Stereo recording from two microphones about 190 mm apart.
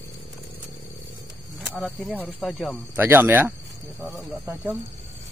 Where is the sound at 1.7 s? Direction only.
Centre (ahead or behind).